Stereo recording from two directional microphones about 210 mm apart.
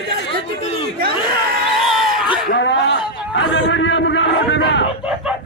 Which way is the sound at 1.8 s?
Centre (ahead or behind).